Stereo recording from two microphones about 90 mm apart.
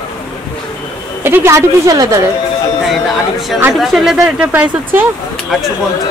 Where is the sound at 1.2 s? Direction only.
25° right (ahead or behind).